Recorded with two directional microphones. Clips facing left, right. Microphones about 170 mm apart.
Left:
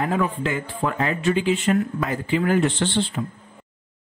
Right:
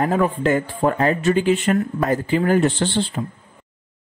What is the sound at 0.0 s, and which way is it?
Speech, 45° right (ahead or behind).